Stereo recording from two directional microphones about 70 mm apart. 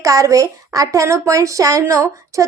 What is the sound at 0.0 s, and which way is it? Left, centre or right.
A woman's voice, right.